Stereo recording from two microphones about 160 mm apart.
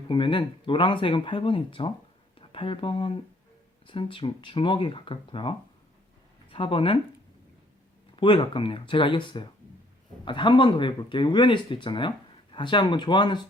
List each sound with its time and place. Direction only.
0.1 s speech: 30° left (ahead or behind)
8.1 s speech: 30° left (ahead or behind)